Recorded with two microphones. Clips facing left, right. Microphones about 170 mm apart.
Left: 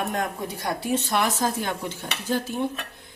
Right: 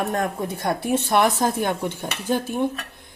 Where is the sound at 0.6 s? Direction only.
55° right (ahead or behind).